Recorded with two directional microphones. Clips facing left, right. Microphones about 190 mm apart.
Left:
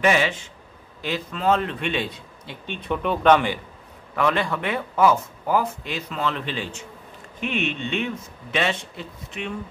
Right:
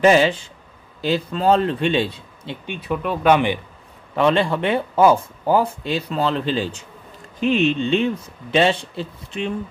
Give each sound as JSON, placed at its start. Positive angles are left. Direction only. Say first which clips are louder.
{"t": 0.0, "sound": "speech", "louder": "right 6 dB", "side_deg": -30}
{"t": 2.6, "sound": "speech", "louder": "right 1 dB", "side_deg": -10}
{"t": 4.1, "sound": "speech", "louder": "right 5 dB", "side_deg": -30}